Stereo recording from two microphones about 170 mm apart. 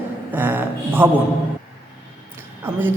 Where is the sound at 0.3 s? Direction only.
10° right (ahead or behind).